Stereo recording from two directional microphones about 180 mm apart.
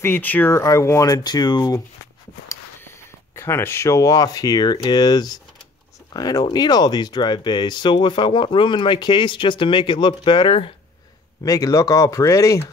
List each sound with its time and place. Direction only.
0.0 s speech: 10° left (ahead or behind)
2.4 s a sound: 15° left (ahead or behind)
3.3 s speech: 15° left (ahead or behind)